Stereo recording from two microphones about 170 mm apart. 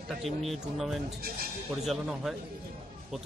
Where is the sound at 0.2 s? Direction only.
Centre (ahead or behind).